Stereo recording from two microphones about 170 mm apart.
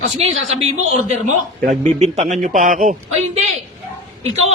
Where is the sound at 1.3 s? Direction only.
45° right (ahead or behind).